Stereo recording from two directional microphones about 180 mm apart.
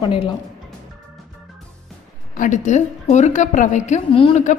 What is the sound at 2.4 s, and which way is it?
A woman's voice, 40° left (ahead or behind).